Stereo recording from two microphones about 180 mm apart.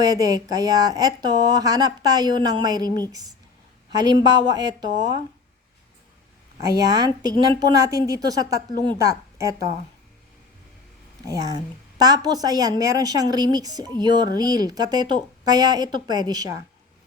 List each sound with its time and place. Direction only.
0.0 s speech: 20° right (ahead or behind)
6.6 s a woman's voice: 20° right (ahead or behind)
11.3 s speech: 20° right (ahead or behind)